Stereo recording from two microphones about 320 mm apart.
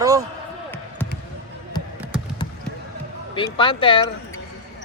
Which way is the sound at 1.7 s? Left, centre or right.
Centre.